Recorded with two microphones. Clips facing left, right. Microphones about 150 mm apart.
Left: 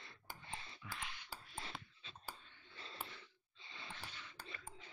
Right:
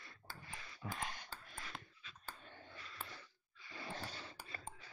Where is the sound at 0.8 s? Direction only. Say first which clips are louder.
Right 6 dB; 45° right (ahead or behind).